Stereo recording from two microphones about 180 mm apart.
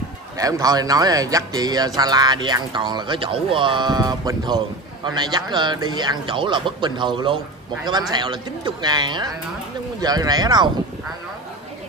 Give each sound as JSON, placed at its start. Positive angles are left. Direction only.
{"t": 0.4, "sound": "speech", "side_deg": -20}